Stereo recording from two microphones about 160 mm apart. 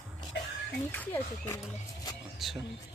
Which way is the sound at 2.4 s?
Centre (ahead or behind).